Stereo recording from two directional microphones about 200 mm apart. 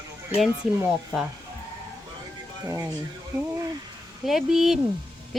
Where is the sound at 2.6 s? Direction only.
15° right (ahead or behind).